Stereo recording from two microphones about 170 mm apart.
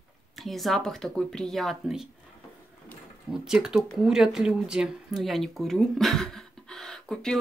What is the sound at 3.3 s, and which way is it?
Speech, 5° right (ahead or behind).